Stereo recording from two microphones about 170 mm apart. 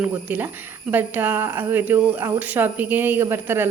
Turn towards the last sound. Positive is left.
turn(degrees=-15)  # may be behind; listen again after turning